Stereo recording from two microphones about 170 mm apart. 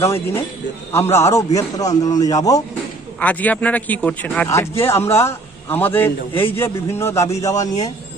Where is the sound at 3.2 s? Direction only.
10° left (ahead or behind).